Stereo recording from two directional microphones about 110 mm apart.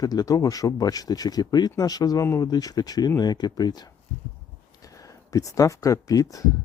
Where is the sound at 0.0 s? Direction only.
35° left (ahead or behind).